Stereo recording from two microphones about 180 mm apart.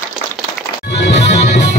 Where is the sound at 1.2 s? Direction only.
40° left (ahead or behind).